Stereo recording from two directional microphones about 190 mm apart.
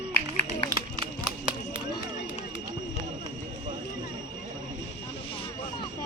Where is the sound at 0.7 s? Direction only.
20° right (ahead or behind).